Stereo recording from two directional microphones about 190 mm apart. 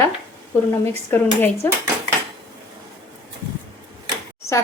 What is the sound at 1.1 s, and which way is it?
Speech, 10° left (ahead or behind).